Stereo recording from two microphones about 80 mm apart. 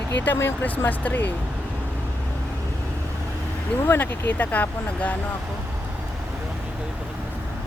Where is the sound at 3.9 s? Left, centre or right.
Left.